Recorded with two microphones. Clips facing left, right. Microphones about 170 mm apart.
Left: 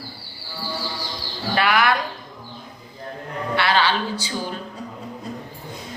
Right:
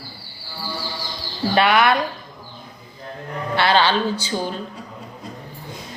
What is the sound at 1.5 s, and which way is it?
Speech, 25° right (ahead or behind).